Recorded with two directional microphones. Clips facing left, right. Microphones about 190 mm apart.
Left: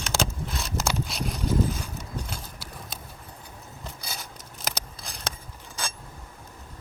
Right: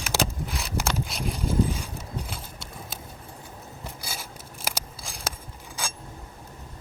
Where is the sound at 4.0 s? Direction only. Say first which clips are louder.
Right 1 dB; 5° right (ahead or behind).